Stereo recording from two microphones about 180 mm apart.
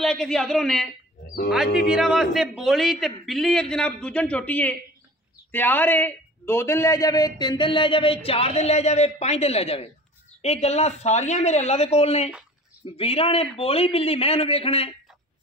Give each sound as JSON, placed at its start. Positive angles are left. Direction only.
{"t": 0.0, "sound": "a man's voice", "side_deg": 0}
{"t": 1.9, "sound": "a man's voice", "side_deg": 0}